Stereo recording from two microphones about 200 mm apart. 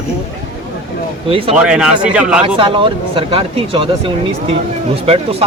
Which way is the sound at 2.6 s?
25° right (ahead or behind).